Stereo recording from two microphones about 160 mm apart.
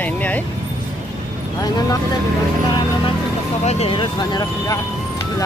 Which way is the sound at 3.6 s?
40° left (ahead or behind).